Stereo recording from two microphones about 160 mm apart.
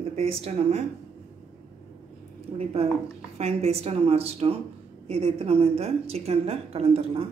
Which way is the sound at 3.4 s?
40° right (ahead or behind).